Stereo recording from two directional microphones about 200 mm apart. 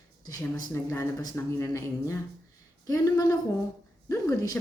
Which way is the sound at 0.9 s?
15° left (ahead or behind).